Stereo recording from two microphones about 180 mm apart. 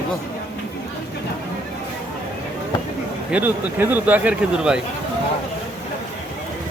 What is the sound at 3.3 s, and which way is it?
Speech, 10° right (ahead or behind).